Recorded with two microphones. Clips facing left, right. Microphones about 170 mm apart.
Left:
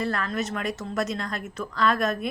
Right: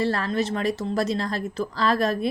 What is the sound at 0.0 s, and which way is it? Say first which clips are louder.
A woman's voice: right 4 dB; 30° right (ahead or behind).